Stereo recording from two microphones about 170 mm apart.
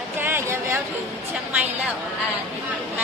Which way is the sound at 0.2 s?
15° right (ahead or behind).